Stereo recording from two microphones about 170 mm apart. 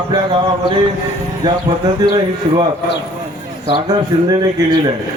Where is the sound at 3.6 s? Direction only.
25° right (ahead or behind).